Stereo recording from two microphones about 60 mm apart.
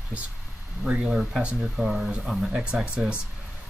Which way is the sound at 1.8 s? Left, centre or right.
Centre.